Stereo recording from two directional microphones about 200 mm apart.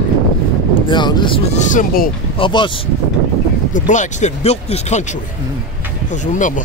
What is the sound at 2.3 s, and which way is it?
Speech, 25° left (ahead or behind).